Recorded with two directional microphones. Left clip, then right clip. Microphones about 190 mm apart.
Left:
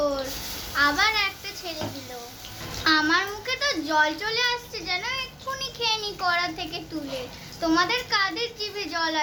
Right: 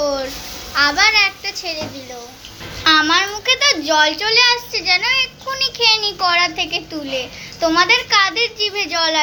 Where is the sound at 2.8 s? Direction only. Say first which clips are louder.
Right 8 dB; 10° right (ahead or behind).